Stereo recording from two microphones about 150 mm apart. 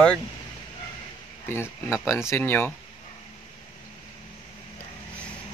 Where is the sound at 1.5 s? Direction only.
15° left (ahead or behind).